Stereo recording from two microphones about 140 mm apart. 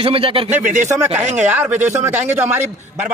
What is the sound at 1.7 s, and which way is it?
Speech, 55° right (ahead or behind).